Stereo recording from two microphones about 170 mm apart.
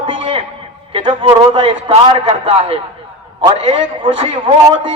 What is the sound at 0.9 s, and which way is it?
A man's voice, 30° right (ahead or behind).